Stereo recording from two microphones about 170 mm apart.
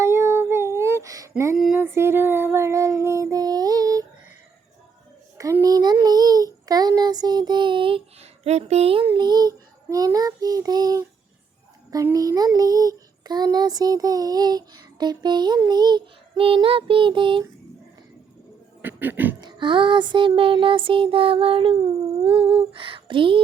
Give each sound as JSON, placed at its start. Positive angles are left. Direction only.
{"t": 0.0, "sound": "child singing", "side_deg": -15}
{"t": 1.5, "sound": "female singing", "side_deg": 0}
{"t": 1.8, "sound": "child singing", "side_deg": -15}
{"t": 5.4, "sound": "a child's voice", "side_deg": -20}
{"t": 18.8, "sound": "a sound", "side_deg": -10}
{"t": 19.4, "sound": "music", "side_deg": -25}